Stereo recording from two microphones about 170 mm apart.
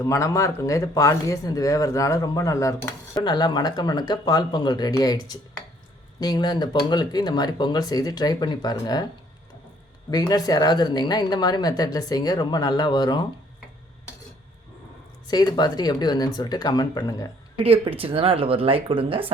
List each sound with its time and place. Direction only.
0.0 s speech: 20° left (ahead or behind)
10.1 s speech: 25° left (ahead or behind)
15.3 s speech: 25° left (ahead or behind)
17.6 s speech: 35° right (ahead or behind)